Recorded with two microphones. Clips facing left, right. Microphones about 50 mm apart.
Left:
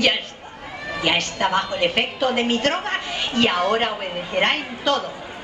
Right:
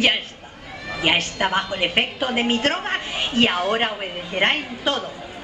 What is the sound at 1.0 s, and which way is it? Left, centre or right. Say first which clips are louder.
A woman's voice: right 1 dB; centre.